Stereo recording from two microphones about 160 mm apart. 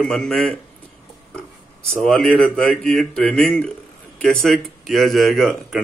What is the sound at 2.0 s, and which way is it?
A man's voice, 5° left (ahead or behind).